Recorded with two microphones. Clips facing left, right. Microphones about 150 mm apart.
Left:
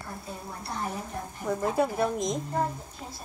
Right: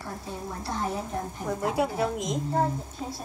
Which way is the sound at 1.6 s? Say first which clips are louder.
Even; 5° right (ahead or behind).